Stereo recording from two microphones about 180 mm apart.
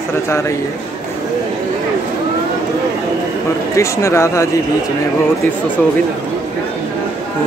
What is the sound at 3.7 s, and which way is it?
Speech, 15° left (ahead or behind).